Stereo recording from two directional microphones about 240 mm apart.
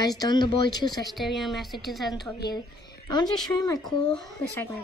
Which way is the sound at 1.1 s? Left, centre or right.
Centre.